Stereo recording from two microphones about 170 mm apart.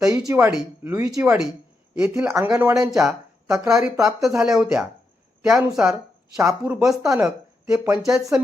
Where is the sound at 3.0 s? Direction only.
15° right (ahead or behind).